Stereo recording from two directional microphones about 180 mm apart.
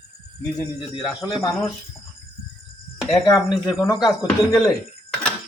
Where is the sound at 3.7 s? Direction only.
20° left (ahead or behind).